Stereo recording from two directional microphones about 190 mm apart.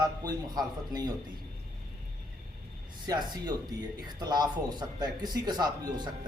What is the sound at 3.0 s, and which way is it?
A man's voice, 20° right (ahead or behind).